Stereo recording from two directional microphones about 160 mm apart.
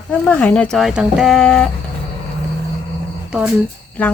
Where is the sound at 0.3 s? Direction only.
10° left (ahead or behind).